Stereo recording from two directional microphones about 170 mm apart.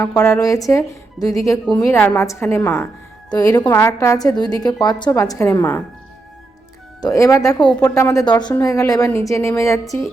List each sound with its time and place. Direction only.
0.2 s a woman's voice: 20° left (ahead or behind)
7.0 s a woman's voice: 20° left (ahead or behind)
7.6 s a woman's voice: 5° left (ahead or behind)
7.9 s a woman's voice: 20° left (ahead or behind)
9.8 s music: centre (ahead or behind)